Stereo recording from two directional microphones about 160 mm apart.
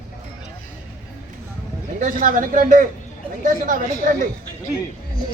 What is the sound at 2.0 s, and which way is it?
Speech, 55° right (ahead or behind).